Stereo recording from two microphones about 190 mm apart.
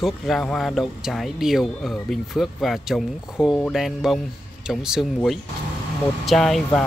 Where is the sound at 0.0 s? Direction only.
Centre (ahead or behind).